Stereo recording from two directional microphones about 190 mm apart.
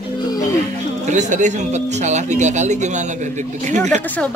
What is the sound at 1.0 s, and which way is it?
Speech, 40° right (ahead or behind).